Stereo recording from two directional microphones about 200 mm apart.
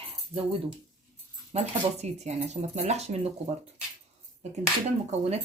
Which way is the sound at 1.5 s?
30° right (ahead or behind).